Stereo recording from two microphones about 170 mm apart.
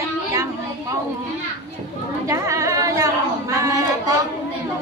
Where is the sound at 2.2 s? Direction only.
20° right (ahead or behind).